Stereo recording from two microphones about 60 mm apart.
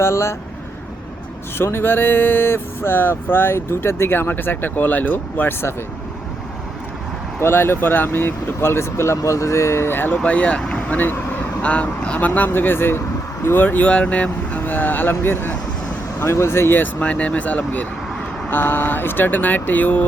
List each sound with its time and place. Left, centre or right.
0.0 s speech: left
1.5 s speech: left
7.3 s speech: left
10.2 s speech: centre
12.5 s speech: left
14.6 s speech: left
17.0 s speech: left
18.5 s speech: left